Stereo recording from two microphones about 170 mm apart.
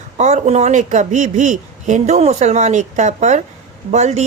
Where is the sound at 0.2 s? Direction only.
40° right (ahead or behind).